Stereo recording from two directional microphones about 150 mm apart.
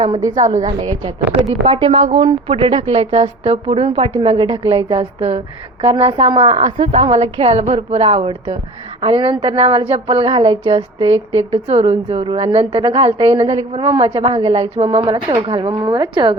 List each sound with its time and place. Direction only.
0.2 s a woman's voice: 20° right (ahead or behind)
0.4 s a woman's voice: 55° right (ahead or behind)
1.6 s a woman's voice: 35° right (ahead or behind)